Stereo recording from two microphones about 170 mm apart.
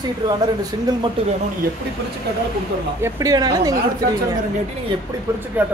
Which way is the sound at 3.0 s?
20° right (ahead or behind).